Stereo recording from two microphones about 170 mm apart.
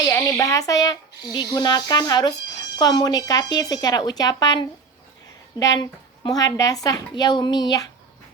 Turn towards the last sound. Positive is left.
turn(degrees=25)  # may be behind; listen again after turning